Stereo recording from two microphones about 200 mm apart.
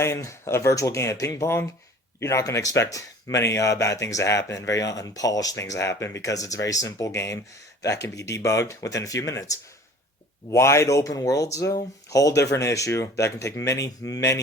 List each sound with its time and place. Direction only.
0.0 s speech: 15° left (ahead or behind)